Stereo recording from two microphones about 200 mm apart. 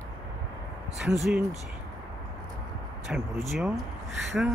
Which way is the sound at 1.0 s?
Centre (ahead or behind).